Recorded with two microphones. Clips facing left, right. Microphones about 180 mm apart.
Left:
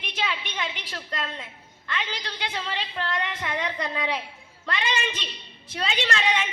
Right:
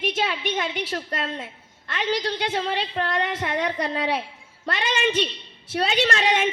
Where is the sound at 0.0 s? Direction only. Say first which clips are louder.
Right 6 dB; 45° right (ahead or behind).